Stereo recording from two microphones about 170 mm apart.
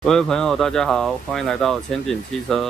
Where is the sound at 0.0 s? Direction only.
5° left (ahead or behind).